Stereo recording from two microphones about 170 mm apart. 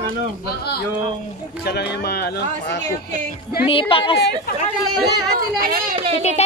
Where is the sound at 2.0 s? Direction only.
70° left (ahead or behind).